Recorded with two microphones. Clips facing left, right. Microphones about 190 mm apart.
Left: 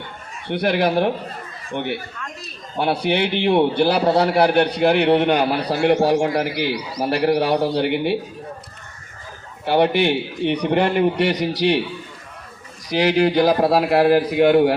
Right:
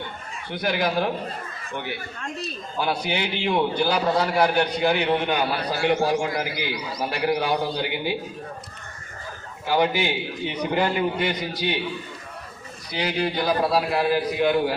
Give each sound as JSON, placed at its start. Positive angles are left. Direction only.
{"t": 0.4, "sound": "a man's voice", "side_deg": 65}
{"t": 9.7, "sound": "a man's voice", "side_deg": 65}
{"t": 13.3, "sound": "a man's voice", "side_deg": 50}